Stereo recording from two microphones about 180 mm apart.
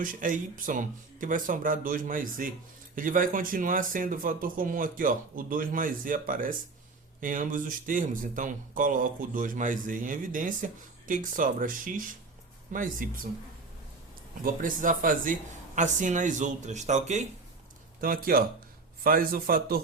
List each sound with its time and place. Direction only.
0.0 s speech: 50° right (ahead or behind)
14.4 s speech: 50° right (ahead or behind)
18.0 s a man's voice: 50° right (ahead or behind)